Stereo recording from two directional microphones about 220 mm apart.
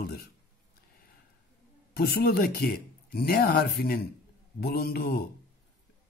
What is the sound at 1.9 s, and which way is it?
Speech, 45° left (ahead or behind).